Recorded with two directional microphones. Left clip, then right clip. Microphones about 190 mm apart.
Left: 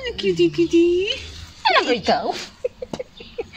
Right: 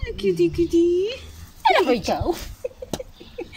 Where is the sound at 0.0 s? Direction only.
40° left (ahead or behind).